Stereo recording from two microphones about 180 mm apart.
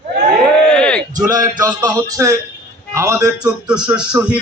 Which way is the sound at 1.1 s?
20° right (ahead or behind).